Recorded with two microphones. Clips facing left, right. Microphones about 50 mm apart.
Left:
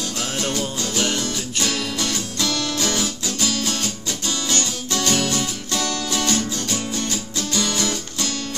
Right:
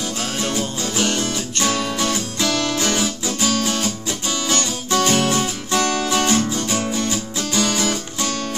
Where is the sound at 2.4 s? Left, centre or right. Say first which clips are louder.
Right 4 dB; right.